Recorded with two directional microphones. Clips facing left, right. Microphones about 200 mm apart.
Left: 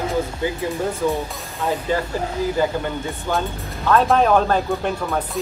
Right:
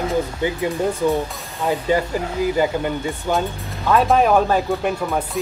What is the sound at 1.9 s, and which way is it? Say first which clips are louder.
Speech: right 3 dB; 15° right (ahead or behind).